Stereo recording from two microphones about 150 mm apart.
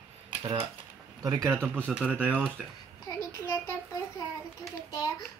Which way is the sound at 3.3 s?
15° left (ahead or behind).